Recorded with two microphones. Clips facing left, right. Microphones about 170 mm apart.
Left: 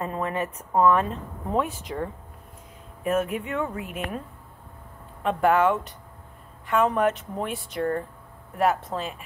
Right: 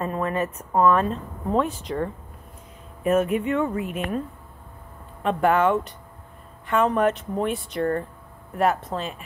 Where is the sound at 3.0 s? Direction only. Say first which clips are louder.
Right 4 dB; centre (ahead or behind).